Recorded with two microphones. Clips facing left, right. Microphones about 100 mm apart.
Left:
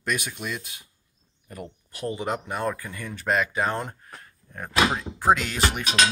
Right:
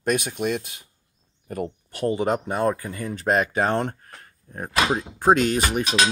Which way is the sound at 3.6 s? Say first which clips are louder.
Right 4 dB; 60° right (ahead or behind).